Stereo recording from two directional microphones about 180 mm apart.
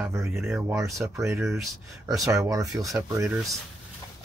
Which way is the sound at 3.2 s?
5° right (ahead or behind).